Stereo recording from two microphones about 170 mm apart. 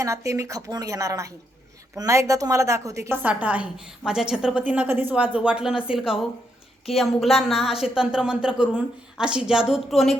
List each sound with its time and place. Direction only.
0.0 s a woman's voice: 20° right (ahead or behind); by 10.2 s centre (ahead or behind)